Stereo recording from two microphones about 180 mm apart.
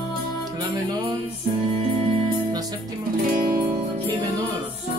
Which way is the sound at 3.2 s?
50° right (ahead or behind).